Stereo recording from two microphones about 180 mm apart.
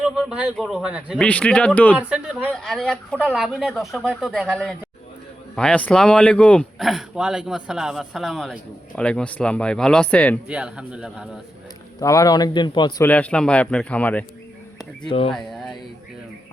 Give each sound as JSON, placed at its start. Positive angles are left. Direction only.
{"t": 0.0, "sound": "speech", "side_deg": -5}
{"t": 1.2, "sound": "a man's voice", "side_deg": 5}
{"t": 2.0, "sound": "speech", "side_deg": -5}
{"t": 10.5, "sound": "speech", "side_deg": -5}
{"t": 11.9, "sound": "a man's voice", "side_deg": 20}
{"t": 13.0, "sound": "a man's voice", "side_deg": 10}
{"t": 15.0, "sound": "speech", "side_deg": 30}
{"t": 15.3, "sound": "speech", "side_deg": 0}